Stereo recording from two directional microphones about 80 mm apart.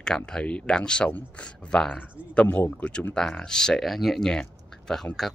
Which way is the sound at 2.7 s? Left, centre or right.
Centre.